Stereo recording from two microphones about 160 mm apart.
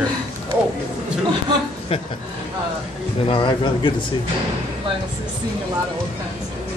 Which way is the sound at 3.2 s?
30° left (ahead or behind).